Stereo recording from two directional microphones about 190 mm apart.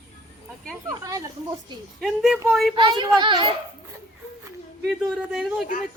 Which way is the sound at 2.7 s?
25° right (ahead or behind).